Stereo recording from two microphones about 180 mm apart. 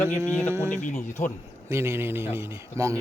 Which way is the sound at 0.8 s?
45° left (ahead or behind).